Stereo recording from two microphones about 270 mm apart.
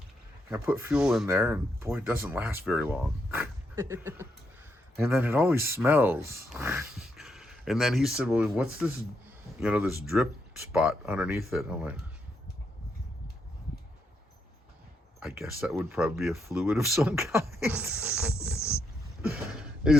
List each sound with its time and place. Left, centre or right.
0.5 s speech: centre
15.2 s speech: centre
18.4 s wild animals: centre
19.5 s a sound: centre